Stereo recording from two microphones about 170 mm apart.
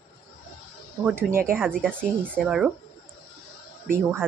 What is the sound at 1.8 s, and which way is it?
Speech, 5° left (ahead or behind).